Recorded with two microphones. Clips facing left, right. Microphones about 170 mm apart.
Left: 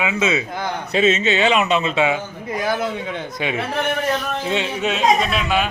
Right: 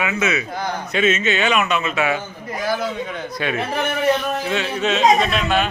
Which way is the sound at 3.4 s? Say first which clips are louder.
Even; 15° left (ahead or behind).